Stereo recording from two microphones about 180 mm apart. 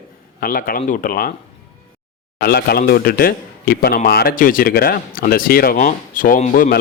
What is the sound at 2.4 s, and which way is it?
Speech, 60° left (ahead or behind).